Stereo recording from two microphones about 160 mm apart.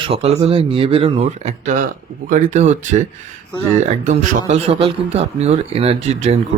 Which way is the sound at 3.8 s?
50° right (ahead or behind).